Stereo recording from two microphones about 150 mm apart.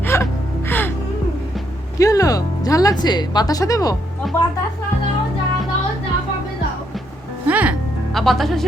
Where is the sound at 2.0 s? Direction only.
20° left (ahead or behind).